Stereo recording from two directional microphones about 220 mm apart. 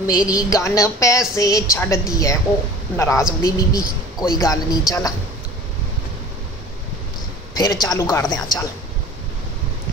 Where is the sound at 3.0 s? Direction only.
15° left (ahead or behind).